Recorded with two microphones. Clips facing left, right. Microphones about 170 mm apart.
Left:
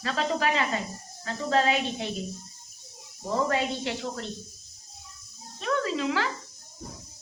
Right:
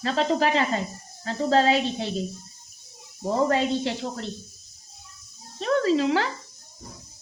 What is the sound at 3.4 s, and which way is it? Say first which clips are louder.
Speech: right 5 dB; 30° right (ahead or behind).